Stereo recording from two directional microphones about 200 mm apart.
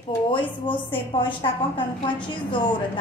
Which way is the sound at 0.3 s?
25° left (ahead or behind).